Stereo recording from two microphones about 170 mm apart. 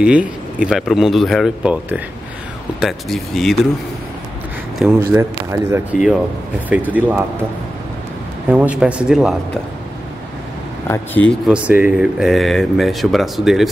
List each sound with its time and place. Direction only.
0.0 s speech: 5° right (ahead or behind)
4.7 s speech: 5° right (ahead or behind)
5.9 s speech: centre (ahead or behind)
8.5 s speech: 10° right (ahead or behind)
10.9 s speech: 10° left (ahead or behind)
11.4 s speech: 5° right (ahead or behind)